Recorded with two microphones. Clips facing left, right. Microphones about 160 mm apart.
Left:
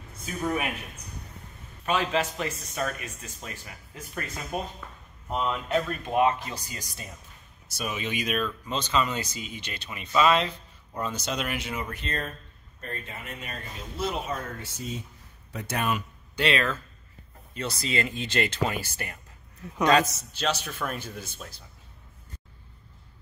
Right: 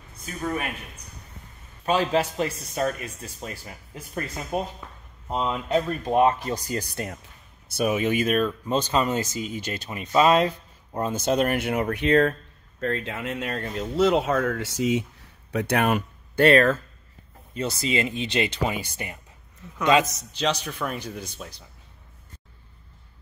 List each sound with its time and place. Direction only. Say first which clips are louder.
0.2 s speech: even; 5° left (ahead or behind)
1.9 s speech: right 4 dB; 35° right (ahead or behind)
6.7 s speech: right 12 dB; 60° right (ahead or behind)
7.7 s speech: right 9 dB; 50° right (ahead or behind); by 12.4 s 70° right (ahead or behind)
12.8 s speech: right 11 dB; 90° right
15.5 s speech: right 7 dB; 65° right (ahead or behind); by 16.8 s 45° right (ahead or behind)
17.6 s speech: right 4 dB; 30° right (ahead or behind)
20.3 s speech: right 3 dB; 5° left (ahead or behind)